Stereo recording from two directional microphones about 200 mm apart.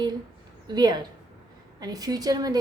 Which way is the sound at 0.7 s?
20° right (ahead or behind).